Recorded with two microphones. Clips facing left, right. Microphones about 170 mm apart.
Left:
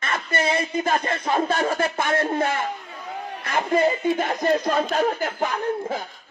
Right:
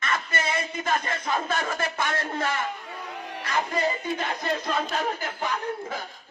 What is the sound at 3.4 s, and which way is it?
Battle cry, 50° left (ahead or behind).